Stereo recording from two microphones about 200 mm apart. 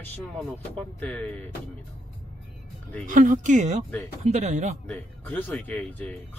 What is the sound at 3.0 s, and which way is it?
Speech, 40° right (ahead or behind).